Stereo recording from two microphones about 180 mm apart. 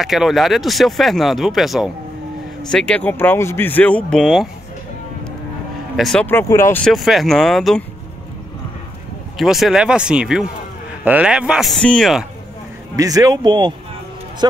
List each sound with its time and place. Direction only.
0.0 s speech: centre (ahead or behind)
5.9 s speech: 5° left (ahead or behind)
6.9 s speech: centre (ahead or behind)
9.4 s speech: centre (ahead or behind)
12.9 s speech: 20° right (ahead or behind)